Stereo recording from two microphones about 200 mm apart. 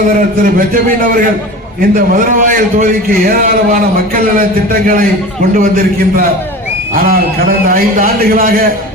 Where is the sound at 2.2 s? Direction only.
40° right (ahead or behind).